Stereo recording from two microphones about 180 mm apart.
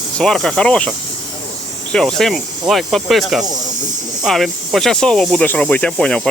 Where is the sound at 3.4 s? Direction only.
20° right (ahead or behind).